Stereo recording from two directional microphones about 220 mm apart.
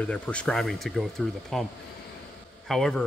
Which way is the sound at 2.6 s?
Centre (ahead or behind).